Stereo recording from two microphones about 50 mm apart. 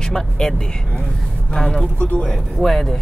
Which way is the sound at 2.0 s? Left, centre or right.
Left.